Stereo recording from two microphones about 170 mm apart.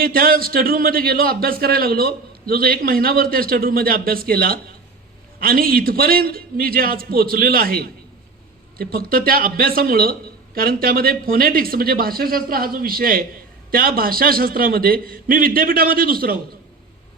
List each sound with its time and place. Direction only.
0.0 s speech: 60° right (ahead or behind)